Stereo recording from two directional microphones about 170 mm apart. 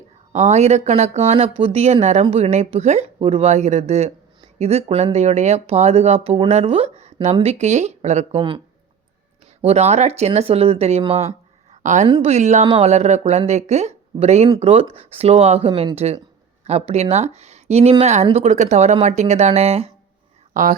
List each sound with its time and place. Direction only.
0.3 s speech: 40° right (ahead or behind)
12.0 s speech: 30° right (ahead or behind)
20.5 s speech: 50° right (ahead or behind)